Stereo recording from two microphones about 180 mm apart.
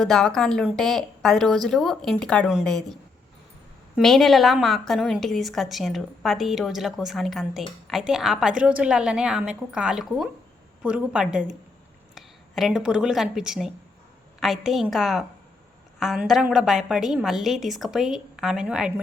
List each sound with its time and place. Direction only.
0.0 s a woman's voice: centre (ahead or behind)